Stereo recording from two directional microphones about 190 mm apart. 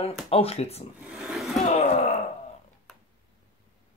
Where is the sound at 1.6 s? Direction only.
35° left (ahead or behind).